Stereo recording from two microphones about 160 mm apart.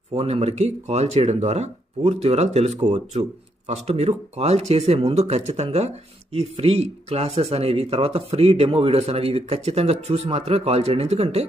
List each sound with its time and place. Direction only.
0.1 s speech: 35° right (ahead or behind)